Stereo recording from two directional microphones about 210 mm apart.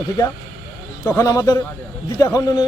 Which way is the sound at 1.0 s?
15° left (ahead or behind).